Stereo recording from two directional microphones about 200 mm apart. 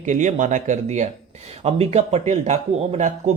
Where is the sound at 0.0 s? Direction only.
40° right (ahead or behind).